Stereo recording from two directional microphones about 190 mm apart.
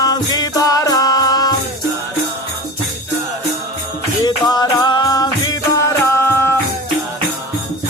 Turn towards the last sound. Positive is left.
turn(degrees=15)  # may be behind; listen again after turning